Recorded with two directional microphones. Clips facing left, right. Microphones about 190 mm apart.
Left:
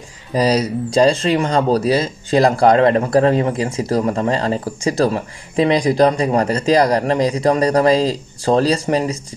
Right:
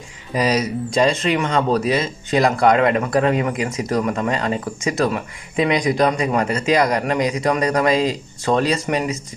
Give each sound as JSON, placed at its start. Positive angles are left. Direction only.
{"t": 0.3, "sound": "speech", "side_deg": 35}